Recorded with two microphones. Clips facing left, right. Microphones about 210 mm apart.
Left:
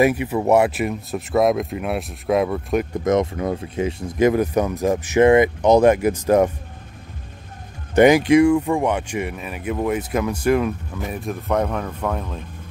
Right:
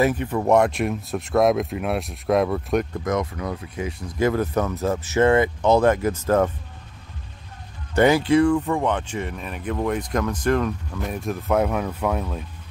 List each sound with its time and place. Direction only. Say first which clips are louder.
0.0 s speech: left 3 dB; 10° left (ahead or behind)
3.0 s speech: left 6 dB; 25° left (ahead or behind)
7.9 s speech: left 4 dB; 15° left (ahead or behind); by 12.4 s 5° right (ahead or behind)